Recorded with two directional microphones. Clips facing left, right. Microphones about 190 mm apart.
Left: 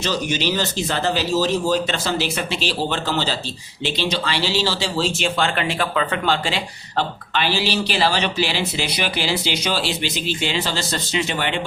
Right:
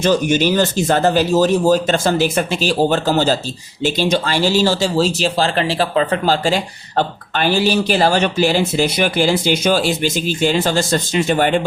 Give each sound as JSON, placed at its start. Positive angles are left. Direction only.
{"t": 0.0, "sound": "speech", "side_deg": -50}